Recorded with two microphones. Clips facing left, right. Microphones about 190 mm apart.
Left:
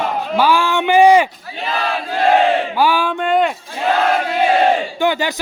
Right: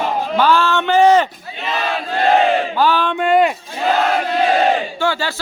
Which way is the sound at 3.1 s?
5° right (ahead or behind).